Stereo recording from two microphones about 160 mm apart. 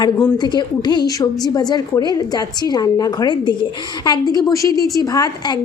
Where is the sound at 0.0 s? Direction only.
20° left (ahead or behind).